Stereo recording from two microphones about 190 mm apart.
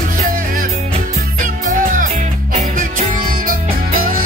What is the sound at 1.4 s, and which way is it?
Music, 45° right (ahead or behind).